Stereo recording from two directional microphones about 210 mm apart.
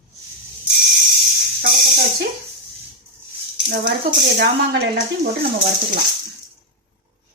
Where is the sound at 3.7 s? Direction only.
45° right (ahead or behind).